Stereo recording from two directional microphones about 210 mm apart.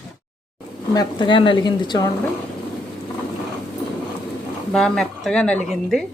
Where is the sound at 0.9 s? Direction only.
25° left (ahead or behind).